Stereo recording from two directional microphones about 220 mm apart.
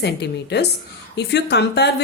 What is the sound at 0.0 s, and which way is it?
A woman's voice, 50° left (ahead or behind).